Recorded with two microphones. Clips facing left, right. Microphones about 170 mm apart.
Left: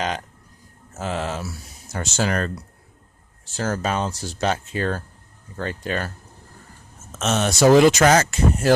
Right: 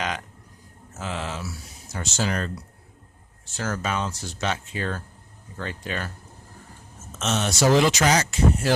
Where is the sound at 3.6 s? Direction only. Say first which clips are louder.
Left 4 dB; 35° left (ahead or behind).